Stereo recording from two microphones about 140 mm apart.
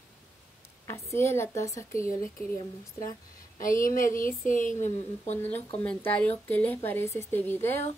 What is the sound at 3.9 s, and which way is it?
Speech, 75° left (ahead or behind).